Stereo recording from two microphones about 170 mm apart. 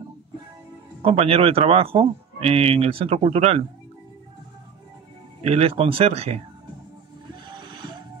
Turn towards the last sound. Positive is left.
turn(degrees=-25)  # may be behind; listen again after turning